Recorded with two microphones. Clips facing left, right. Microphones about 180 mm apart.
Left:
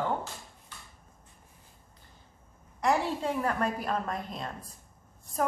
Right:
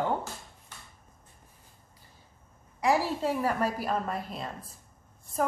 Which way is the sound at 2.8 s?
5° right (ahead or behind).